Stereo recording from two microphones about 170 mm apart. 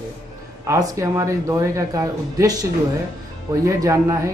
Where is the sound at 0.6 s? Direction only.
15° right (ahead or behind).